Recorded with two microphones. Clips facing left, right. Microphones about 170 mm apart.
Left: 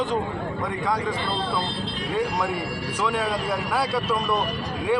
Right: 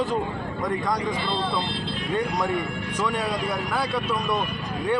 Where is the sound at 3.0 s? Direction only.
Centre (ahead or behind).